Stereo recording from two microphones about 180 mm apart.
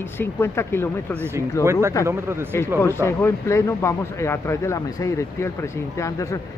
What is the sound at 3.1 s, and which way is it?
Speech, 15° left (ahead or behind).